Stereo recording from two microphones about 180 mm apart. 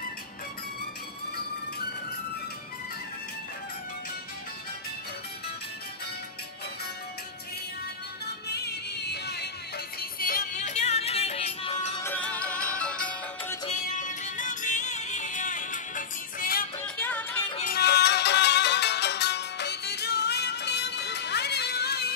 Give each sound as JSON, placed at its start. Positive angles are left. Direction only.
{"t": 8.5, "sound": "music", "side_deg": 65}
{"t": 9.9, "sound": "music", "side_deg": 55}
{"t": 12.0, "sound": "music", "side_deg": 10}
{"t": 13.7, "sound": "music", "side_deg": 45}
{"t": 16.8, "sound": "music", "side_deg": 10}
{"t": 17.7, "sound": "music", "side_deg": 65}